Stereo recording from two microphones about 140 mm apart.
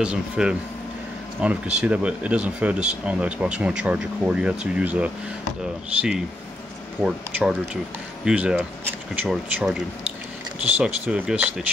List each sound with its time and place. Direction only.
0.0 s speech: 5° right (ahead or behind)
10.8 s speech: 5° right (ahead or behind)